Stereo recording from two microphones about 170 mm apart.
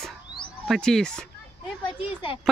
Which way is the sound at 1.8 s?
30° left (ahead or behind).